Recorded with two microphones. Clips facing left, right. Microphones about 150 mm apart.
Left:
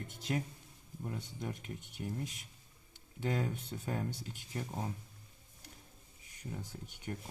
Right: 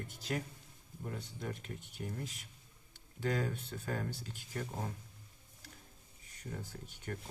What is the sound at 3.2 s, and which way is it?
Speech, 20° left (ahead or behind).